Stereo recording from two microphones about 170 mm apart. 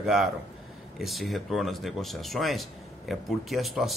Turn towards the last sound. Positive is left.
turn(degrees=0)  # may be behind; listen again after turning